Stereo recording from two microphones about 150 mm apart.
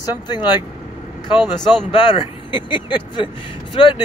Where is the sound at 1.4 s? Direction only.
Centre (ahead or behind).